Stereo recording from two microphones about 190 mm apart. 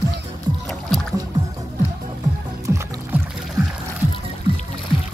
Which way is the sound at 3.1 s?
10° right (ahead or behind).